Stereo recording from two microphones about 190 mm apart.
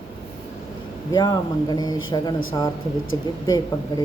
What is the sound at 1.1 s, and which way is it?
Speech, 20° left (ahead or behind).